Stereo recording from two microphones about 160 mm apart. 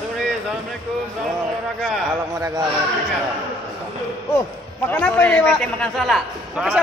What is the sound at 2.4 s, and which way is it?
Speech, 20° right (ahead or behind).